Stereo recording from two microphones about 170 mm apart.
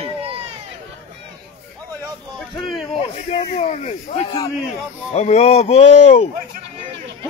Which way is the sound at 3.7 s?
50° left (ahead or behind).